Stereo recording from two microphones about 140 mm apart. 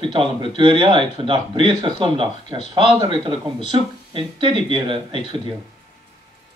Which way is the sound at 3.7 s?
35° right (ahead or behind).